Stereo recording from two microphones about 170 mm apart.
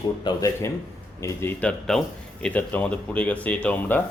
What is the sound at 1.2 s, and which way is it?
Speech, 15° left (ahead or behind).